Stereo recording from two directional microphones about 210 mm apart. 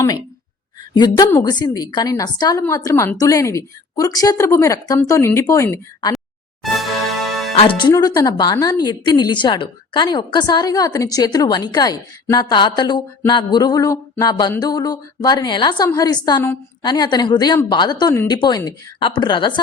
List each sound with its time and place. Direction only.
0.9 s a woman's voice: 20° left (ahead or behind)
6.6 s music: centre (ahead or behind)
7.5 s a woman's voice: 25° left (ahead or behind)